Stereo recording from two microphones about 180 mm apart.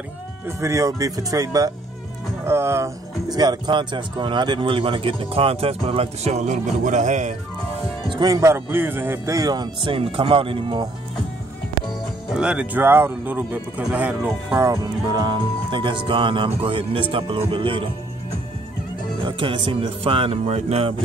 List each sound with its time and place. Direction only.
0.5 s speech: 15° right (ahead or behind); by 7.3 s 40° right (ahead or behind)
8.1 s speech: 20° right (ahead or behind)
12.3 s speech: 5° right (ahead or behind); by 17.8 s 30° right (ahead or behind)
19.2 s speech: 30° right (ahead or behind)